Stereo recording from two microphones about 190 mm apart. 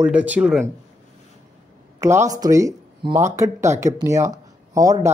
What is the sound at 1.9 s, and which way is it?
Speech, 15° right (ahead or behind).